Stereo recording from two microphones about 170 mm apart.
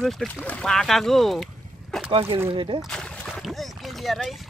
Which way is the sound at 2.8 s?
Centre (ahead or behind).